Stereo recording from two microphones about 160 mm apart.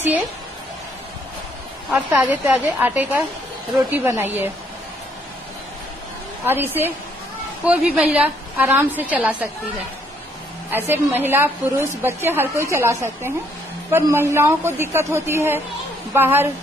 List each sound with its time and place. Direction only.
1.9 s a woman's voice: 10° right (ahead or behind)
6.4 s a woman's voice: 15° right (ahead or behind)
10.7 s a woman's voice: 15° right (ahead or behind)